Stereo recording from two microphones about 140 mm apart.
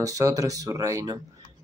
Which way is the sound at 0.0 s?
25° right (ahead or behind).